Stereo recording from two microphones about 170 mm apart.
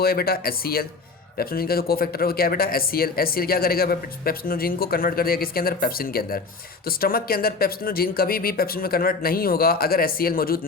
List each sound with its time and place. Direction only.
0.0 s speech: 65° left (ahead or behind)